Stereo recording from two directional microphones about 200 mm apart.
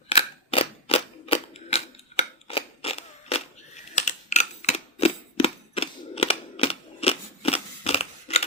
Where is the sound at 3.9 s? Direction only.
35° left (ahead or behind).